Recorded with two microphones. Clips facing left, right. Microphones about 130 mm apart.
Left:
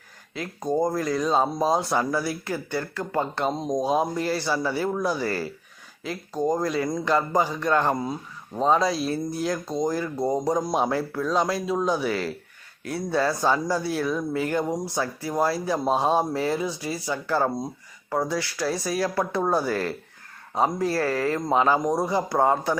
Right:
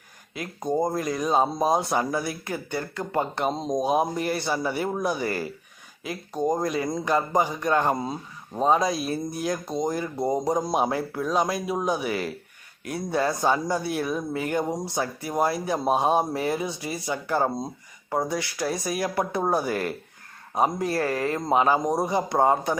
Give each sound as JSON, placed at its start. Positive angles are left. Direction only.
{"t": 0.3, "sound": "speech", "side_deg": -20}